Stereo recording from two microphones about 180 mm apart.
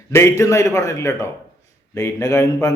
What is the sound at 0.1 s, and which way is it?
A man's voice, 15° left (ahead or behind).